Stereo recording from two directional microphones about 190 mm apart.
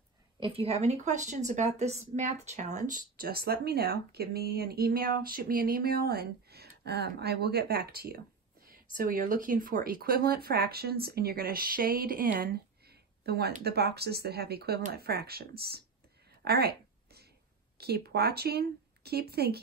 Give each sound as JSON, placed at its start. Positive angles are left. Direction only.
{"t": 0.4, "sound": "speech", "side_deg": -30}
{"t": 16.4, "sound": "a sound", "side_deg": -55}
{"t": 17.7, "sound": "speech", "side_deg": -55}